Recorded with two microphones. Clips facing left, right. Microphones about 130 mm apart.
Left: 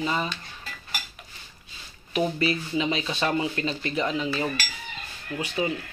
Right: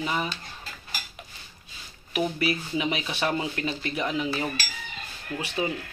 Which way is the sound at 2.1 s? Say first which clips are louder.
Left 2 dB; 10° right (ahead or behind).